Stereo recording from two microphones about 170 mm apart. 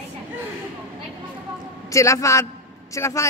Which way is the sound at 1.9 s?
20° left (ahead or behind).